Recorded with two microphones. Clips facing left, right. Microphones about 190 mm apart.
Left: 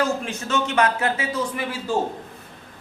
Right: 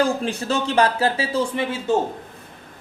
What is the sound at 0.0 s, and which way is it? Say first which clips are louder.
Speech: right 3 dB; 35° right (ahead or behind).